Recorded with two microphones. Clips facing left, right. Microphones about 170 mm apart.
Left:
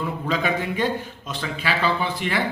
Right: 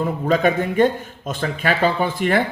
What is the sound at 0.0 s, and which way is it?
A man's voice, 50° right (ahead or behind).